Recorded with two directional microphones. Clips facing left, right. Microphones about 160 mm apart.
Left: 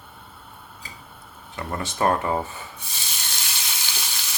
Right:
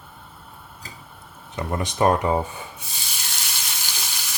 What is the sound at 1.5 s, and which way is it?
Speech, 20° right (ahead or behind).